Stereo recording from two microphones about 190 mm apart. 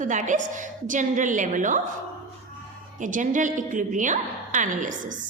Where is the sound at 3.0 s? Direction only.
40° right (ahead or behind).